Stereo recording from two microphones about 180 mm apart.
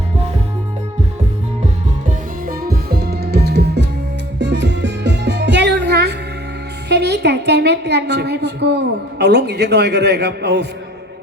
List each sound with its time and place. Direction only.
2.0 s music: 55° right (ahead or behind)
6.8 s a woman's voice: 70° right (ahead or behind)